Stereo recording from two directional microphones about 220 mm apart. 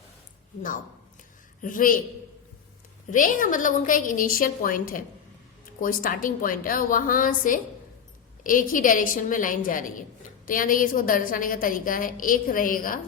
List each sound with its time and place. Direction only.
1.6 s a woman's voice: 40° left (ahead or behind)
3.1 s a woman's voice: 35° left (ahead or behind)